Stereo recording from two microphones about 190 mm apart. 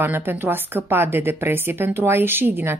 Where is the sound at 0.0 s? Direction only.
10° right (ahead or behind).